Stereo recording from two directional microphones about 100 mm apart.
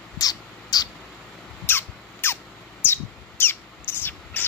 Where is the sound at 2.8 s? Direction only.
20° left (ahead or behind).